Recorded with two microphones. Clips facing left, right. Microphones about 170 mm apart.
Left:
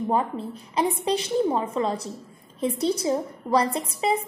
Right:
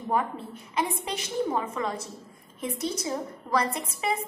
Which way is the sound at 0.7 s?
30° left (ahead or behind).